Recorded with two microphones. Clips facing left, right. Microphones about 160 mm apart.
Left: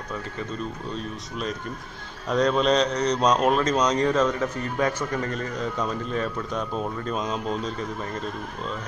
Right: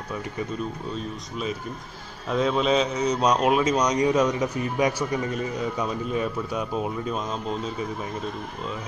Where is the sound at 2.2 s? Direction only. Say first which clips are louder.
Left 1 dB; 5° right (ahead or behind).